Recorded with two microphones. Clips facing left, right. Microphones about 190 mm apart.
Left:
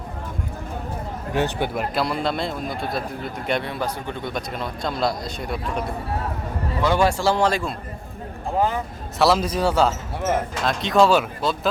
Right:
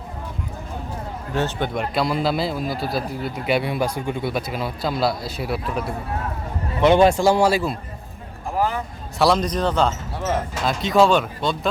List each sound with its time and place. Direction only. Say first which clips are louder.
1.4 s speech: even; 10° left (ahead or behind); by 5.8 s 5° right (ahead or behind)
6.8 s a man's voice: right 5 dB; 20° right (ahead or behind)
9.1 s speech: even; centre (ahead or behind)